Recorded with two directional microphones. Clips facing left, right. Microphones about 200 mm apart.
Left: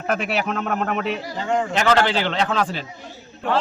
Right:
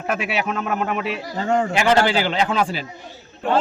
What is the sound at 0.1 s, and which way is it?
A man's voice, centre (ahead or behind).